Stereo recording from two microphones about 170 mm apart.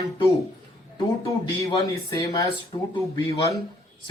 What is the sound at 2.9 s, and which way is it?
Speech, 35° left (ahead or behind).